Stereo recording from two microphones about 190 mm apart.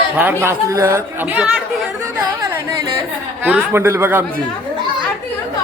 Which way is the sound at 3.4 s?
10° right (ahead or behind).